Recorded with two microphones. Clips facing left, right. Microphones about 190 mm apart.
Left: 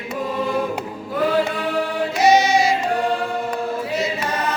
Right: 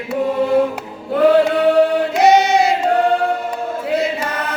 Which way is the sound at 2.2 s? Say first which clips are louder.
Right 2 dB; 60° right (ahead or behind).